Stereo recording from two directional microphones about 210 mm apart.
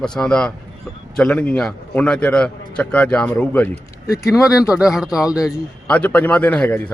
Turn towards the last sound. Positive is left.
turn(degrees=5)  # may be behind; listen again after turning